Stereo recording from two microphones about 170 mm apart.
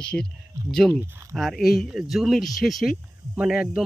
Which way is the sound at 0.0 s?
5° left (ahead or behind).